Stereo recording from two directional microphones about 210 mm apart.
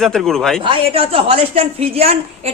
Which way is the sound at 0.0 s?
Centre (ahead or behind).